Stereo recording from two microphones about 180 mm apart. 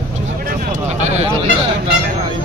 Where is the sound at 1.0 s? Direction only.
40° right (ahead or behind).